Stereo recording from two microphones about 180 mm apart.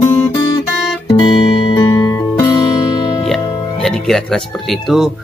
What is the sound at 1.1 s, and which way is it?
Music, 30° left (ahead or behind).